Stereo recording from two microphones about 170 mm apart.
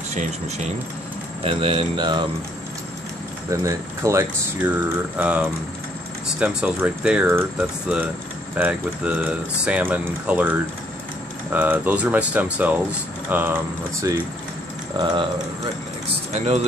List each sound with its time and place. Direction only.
0.1 s speech: 45° right (ahead or behind)
1.4 s speech: 35° right (ahead or behind)
3.4 s speech: 20° right (ahead or behind)
8.5 s speech: 10° right (ahead or behind); by 15.7 s 25° right (ahead or behind)